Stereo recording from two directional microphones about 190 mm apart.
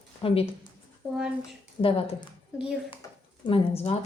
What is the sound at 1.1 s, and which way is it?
Speech, 5° right (ahead or behind).